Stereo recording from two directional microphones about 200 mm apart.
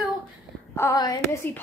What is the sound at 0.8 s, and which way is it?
Speech, 15° left (ahead or behind).